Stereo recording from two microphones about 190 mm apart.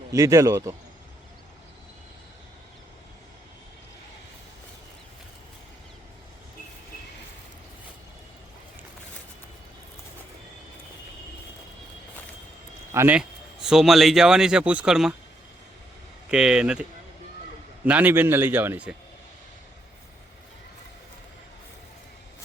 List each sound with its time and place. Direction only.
0.1 s a man's voice: 15° right (ahead or behind)
12.9 s a man's voice: 10° right (ahead or behind)
16.3 s speech: 5° right (ahead or behind)
17.8 s a man's voice: 10° right (ahead or behind)